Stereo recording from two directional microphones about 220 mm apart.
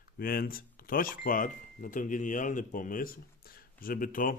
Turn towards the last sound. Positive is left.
turn(degrees=40)  # may be behind; listen again after turning